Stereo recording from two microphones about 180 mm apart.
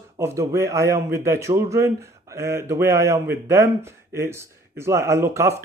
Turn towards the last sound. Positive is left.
turn(degrees=-15)  # may be behind; listen again after turning